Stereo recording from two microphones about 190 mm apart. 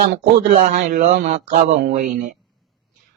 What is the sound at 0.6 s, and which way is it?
Speech, 40° right (ahead or behind).